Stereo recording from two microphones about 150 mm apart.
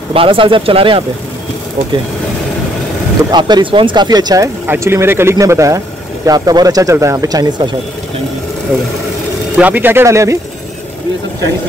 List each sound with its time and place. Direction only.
0.1 s speech: 35° right (ahead or behind)
3.3 s speech: 30° right (ahead or behind)
9.6 s speech: 10° right (ahead or behind)